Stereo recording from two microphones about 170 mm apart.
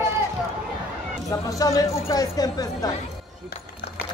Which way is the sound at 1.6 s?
20° left (ahead or behind).